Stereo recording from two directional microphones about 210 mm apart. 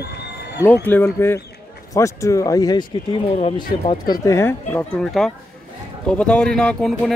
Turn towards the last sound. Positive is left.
turn(degrees=0)  # may be behind; listen again after turning